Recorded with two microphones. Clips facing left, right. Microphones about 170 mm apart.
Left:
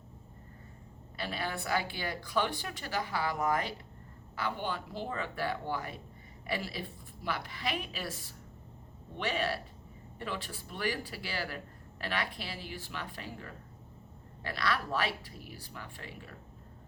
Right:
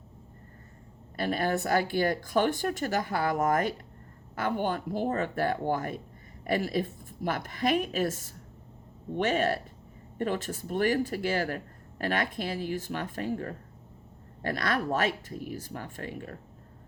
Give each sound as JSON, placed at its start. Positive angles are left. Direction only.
{"t": 1.1, "sound": "speech", "side_deg": -50}